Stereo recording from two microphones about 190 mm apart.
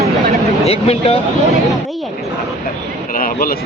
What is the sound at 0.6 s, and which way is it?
Speech, 30° left (ahead or behind).